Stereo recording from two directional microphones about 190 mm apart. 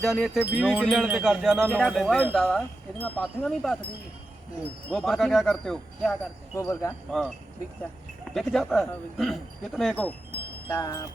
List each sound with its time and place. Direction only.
0.0 s speech: centre (ahead or behind)
4.9 s speech: centre (ahead or behind)
6.6 s speech: 15° left (ahead or behind)
7.1 s speech: centre (ahead or behind)
10.7 s wind chime: 20° left (ahead or behind)